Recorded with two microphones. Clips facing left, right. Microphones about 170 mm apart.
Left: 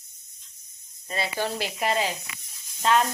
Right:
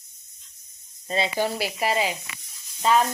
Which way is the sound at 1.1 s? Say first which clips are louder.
Right 5 dB; 25° right (ahead or behind).